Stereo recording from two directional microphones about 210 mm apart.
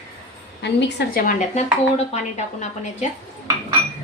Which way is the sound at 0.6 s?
55° left (ahead or behind).